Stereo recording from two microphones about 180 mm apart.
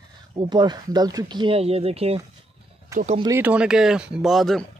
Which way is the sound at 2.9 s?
15° right (ahead or behind).